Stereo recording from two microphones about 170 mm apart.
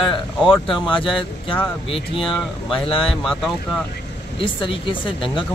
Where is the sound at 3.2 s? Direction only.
5° left (ahead or behind).